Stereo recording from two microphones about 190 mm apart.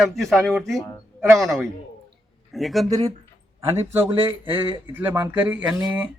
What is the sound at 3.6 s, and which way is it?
A man's voice, 15° right (ahead or behind).